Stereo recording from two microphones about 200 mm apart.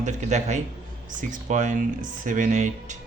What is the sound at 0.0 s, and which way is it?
Speech, 35° right (ahead or behind).